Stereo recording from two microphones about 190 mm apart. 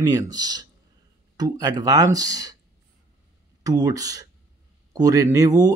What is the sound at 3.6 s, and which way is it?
Speech, 20° right (ahead or behind).